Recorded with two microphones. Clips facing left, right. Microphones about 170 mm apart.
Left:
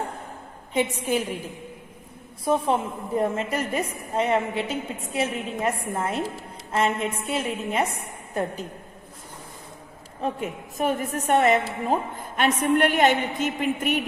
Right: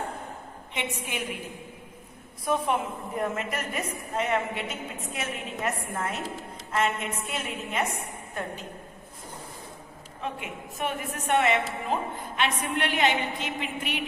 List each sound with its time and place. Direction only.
0.7 s a woman's voice: 35° left (ahead or behind)
2.4 s a woman's voice: 30° left (ahead or behind)
10.2 s a woman's voice: 40° left (ahead or behind)